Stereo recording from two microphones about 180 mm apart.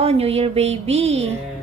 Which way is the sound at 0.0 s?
35° right (ahead or behind).